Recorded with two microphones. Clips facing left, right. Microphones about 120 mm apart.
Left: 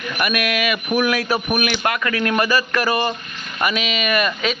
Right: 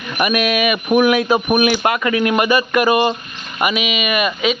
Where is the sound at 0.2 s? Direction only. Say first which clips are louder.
Right 5 dB; 20° right (ahead or behind).